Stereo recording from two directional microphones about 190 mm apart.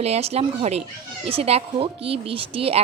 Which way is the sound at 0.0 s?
35° right (ahead or behind).